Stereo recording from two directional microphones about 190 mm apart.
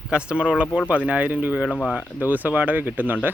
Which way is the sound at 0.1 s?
5° right (ahead or behind).